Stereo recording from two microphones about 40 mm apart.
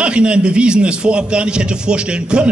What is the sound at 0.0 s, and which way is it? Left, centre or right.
A man's voice, right.